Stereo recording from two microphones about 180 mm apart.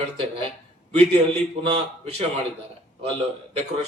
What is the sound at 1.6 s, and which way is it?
Speech, 30° right (ahead or behind).